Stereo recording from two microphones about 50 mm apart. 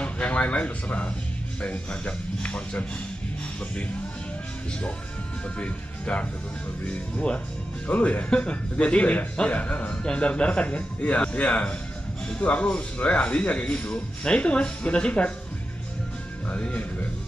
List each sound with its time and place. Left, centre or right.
0.0 s speech: left
5.6 s speech: left
16.4 s speech: left